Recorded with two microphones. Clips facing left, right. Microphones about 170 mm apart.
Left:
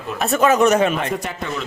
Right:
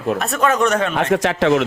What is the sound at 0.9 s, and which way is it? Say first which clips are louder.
Speech: right 7 dB; 90° right.